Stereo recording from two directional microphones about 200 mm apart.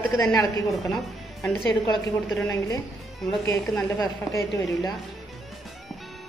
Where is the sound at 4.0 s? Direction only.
15° left (ahead or behind).